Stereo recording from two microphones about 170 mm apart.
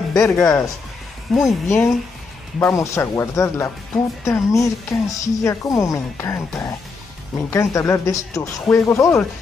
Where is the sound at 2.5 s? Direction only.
15° left (ahead or behind).